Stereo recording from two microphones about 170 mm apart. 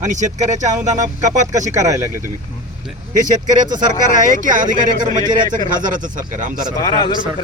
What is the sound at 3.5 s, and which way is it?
Speech, 50° right (ahead or behind).